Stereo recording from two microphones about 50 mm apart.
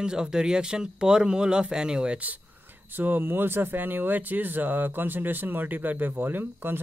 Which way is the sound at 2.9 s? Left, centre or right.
Right.